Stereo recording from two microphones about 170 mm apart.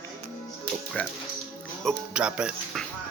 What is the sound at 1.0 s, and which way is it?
Speech, 10° left (ahead or behind).